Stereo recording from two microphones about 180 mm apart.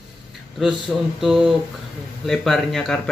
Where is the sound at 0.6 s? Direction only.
Centre (ahead or behind).